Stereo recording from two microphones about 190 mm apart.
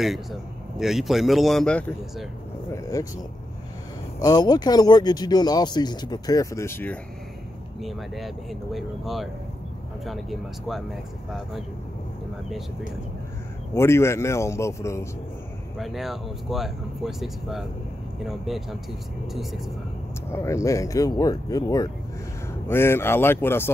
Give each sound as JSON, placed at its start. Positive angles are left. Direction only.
{"t": 0.0, "sound": "a man's voice", "side_deg": 0}
{"t": 2.7, "sound": "a man's voice", "side_deg": 15}
{"t": 4.2, "sound": "speech", "side_deg": 20}
{"t": 7.8, "sound": "a man's voice", "side_deg": 0}
{"t": 13.7, "sound": "a man's voice", "side_deg": 15}
{"t": 15.8, "sound": "a man's voice", "side_deg": 0}
{"t": 20.2, "sound": "a man's voice", "side_deg": 15}